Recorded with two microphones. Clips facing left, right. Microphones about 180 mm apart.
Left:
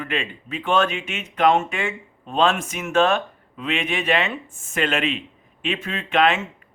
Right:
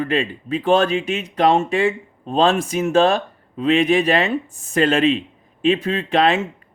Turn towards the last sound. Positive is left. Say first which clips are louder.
# right 3 dB
turn(degrees=-35)  # may be behind; listen again after turning